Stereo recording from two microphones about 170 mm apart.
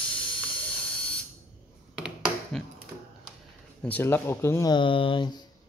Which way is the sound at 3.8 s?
10° left (ahead or behind).